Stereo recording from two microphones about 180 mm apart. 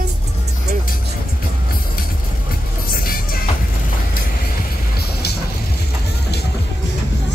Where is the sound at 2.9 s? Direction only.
55° left (ahead or behind).